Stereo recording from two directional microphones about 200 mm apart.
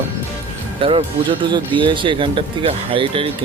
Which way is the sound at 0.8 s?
25° right (ahead or behind).